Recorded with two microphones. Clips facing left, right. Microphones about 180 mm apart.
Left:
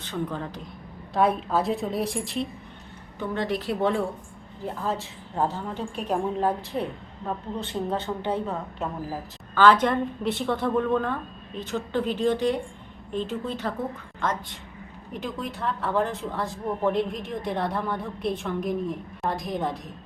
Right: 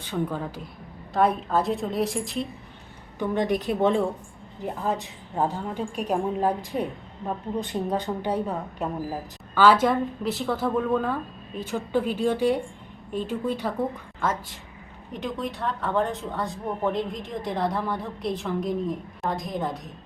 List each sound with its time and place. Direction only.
0.0 s a woman's voice: 10° right (ahead or behind)
3.2 s a woman's voice: 15° right (ahead or behind)
15.1 s a woman's voice: centre (ahead or behind)